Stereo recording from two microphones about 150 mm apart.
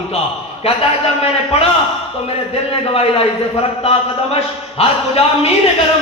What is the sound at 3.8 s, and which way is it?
A man's voice, 40° left (ahead or behind).